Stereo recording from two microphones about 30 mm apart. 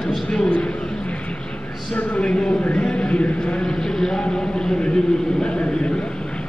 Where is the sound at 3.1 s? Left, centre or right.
Left.